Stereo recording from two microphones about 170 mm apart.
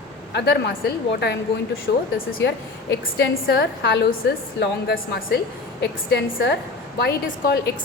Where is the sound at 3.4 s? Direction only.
65° left (ahead or behind).